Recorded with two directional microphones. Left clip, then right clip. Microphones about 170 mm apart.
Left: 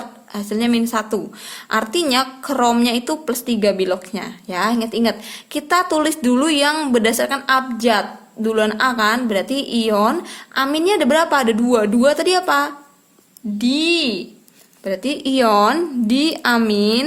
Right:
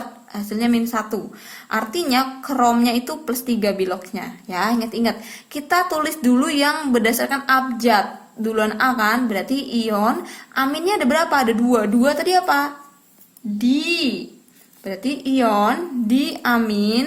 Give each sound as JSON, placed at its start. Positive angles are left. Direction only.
{"t": 0.3, "sound": "a woman's voice", "side_deg": 25}